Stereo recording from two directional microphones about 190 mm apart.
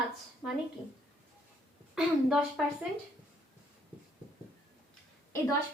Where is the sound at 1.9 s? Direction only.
Centre (ahead or behind).